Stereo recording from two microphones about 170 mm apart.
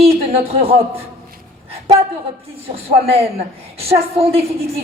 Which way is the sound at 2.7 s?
35° right (ahead or behind).